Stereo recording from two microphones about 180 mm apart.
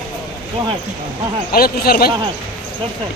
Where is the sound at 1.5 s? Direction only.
55° left (ahead or behind).